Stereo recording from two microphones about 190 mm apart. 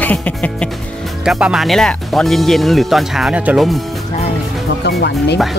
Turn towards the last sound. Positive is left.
turn(degrees=60)  # may be behind; listen again after turning